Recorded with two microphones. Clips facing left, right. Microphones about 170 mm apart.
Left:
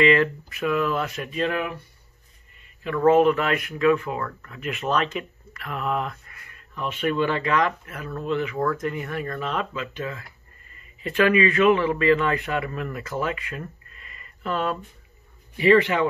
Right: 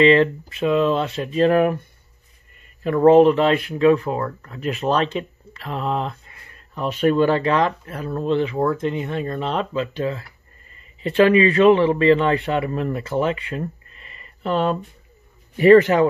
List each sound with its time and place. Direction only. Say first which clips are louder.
0.0 s speech: right 5 dB; 30° right (ahead or behind)
2.8 s a man's voice: right 5 dB; 35° right (ahead or behind)
15.5 s speech: right 6 dB; 45° right (ahead or behind)